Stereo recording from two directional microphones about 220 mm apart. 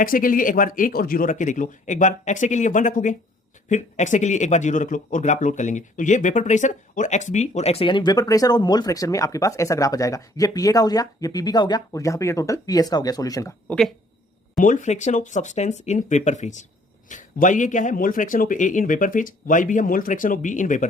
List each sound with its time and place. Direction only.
0.0 s speech: 40° left (ahead or behind); by 13.7 s 15° left (ahead or behind)
14.6 s speech: 35° left (ahead or behind)